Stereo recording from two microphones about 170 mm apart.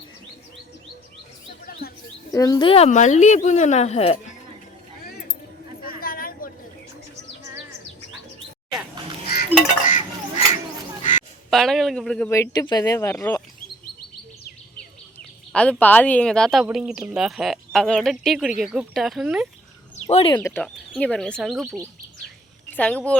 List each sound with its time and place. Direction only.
2.3 s a woman's voice: 20° left (ahead or behind); by 4.4 s 35° left (ahead or behind)
5.8 s a sound: 60° left (ahead or behind)
9.2 s chink: 65° left (ahead or behind)
9.5 s a sound: 5° right (ahead or behind)
11.5 s speech: centre (ahead or behind)
12.3 s speech: 20° left (ahead or behind)
15.2 s a sound: 5° left (ahead or behind)
15.8 s speech: 10° left (ahead or behind)
20.1 s a woman's voice: 35° left (ahead or behind)
20.3 s speech: 15° left (ahead or behind)